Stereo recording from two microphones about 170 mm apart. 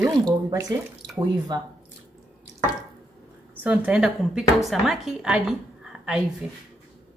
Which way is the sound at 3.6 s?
10° right (ahead or behind).